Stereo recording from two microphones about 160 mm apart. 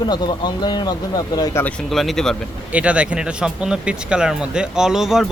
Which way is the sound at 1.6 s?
Centre (ahead or behind).